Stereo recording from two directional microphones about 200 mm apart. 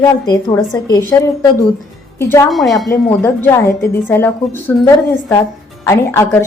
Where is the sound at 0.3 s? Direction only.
15° left (ahead or behind).